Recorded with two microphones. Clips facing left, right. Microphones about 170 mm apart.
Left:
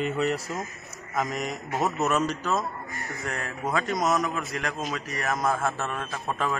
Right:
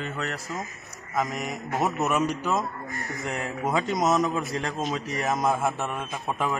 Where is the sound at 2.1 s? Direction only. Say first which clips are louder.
Right 1 dB; 15° right (ahead or behind).